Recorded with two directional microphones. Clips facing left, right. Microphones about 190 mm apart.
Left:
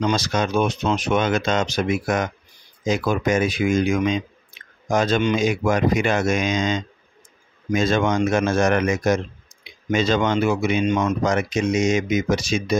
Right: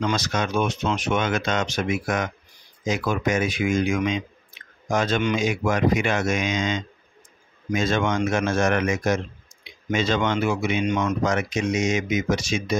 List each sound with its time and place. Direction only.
0.1 s speech: 30° left (ahead or behind)